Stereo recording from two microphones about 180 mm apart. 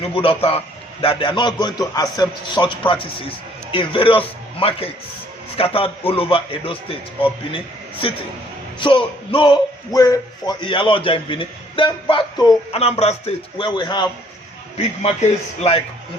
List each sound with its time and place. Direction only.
0.1 s a man's voice: 30° left (ahead or behind)
8.8 s a man's voice: 30° left (ahead or behind)